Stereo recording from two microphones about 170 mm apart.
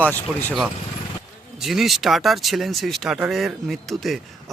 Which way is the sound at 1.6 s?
Centre (ahead or behind).